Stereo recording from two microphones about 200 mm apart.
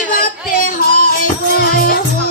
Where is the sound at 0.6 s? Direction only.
45° left (ahead or behind).